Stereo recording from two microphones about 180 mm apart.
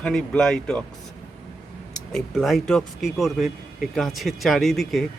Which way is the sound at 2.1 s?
Centre (ahead or behind).